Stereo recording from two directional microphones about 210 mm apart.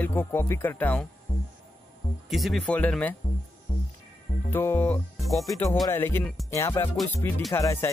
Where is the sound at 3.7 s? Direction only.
35° left (ahead or behind).